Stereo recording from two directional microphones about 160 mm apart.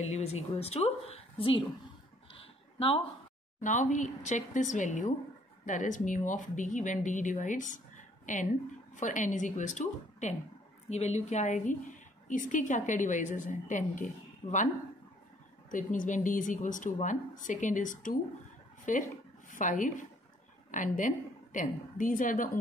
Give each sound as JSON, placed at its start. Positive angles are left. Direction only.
{"t": 0.0, "sound": "speech", "side_deg": 40}
{"t": 2.3, "sound": "a sound", "side_deg": 35}
{"t": 3.6, "sound": "a woman's voice", "side_deg": 50}
{"t": 15.7, "sound": "a woman's voice", "side_deg": 55}